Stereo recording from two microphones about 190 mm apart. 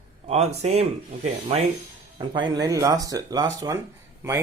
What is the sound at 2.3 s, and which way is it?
Speech, 20° right (ahead or behind).